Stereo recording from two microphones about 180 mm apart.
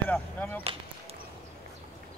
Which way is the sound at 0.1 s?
10° left (ahead or behind).